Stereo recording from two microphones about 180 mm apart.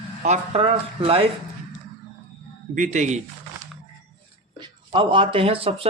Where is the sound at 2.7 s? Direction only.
45° right (ahead or behind).